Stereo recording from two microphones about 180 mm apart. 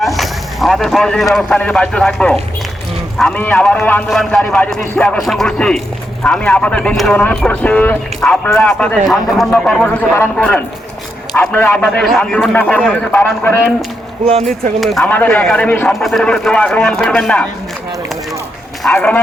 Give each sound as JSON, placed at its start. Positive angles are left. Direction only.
{"t": 0.0, "sound": "a man's voice", "side_deg": 0}
{"t": 14.8, "sound": "speech", "side_deg": 0}
{"t": 18.8, "sound": "speech", "side_deg": 5}